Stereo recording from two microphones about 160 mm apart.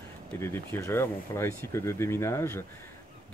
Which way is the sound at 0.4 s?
15° left (ahead or behind).